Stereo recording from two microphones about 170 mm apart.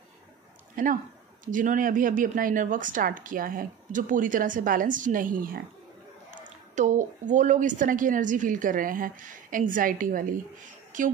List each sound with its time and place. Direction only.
0.8 s speech: 55° right (ahead or behind)
6.7 s a woman's voice: 45° right (ahead or behind)